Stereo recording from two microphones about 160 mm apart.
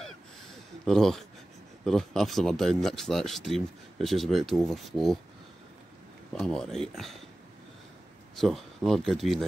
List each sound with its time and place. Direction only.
0.8 s speech: centre (ahead or behind)
6.3 s speech: 5° left (ahead or behind)
8.4 s speech: centre (ahead or behind)